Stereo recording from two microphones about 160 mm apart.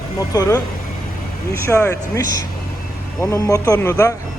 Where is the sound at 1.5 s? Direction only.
15° left (ahead or behind).